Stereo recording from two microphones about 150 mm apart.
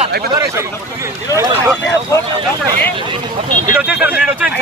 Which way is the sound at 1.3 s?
20° right (ahead or behind).